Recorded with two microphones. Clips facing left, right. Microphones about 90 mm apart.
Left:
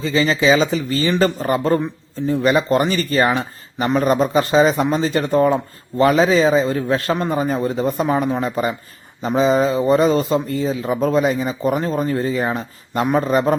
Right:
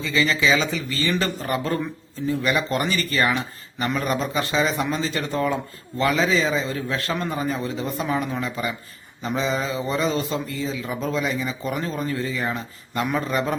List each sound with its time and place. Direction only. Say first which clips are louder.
0.0 s speech: left 5 dB; 35° left (ahead or behind)